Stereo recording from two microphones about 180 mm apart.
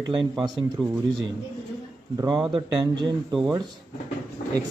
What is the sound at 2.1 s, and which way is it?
Speech, 25° right (ahead or behind).